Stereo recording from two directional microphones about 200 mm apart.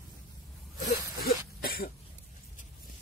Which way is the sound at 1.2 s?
50° left (ahead or behind).